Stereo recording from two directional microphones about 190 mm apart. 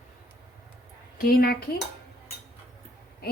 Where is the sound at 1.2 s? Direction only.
50° left (ahead or behind).